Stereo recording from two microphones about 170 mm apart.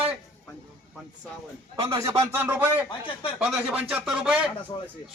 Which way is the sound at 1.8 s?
20° right (ahead or behind).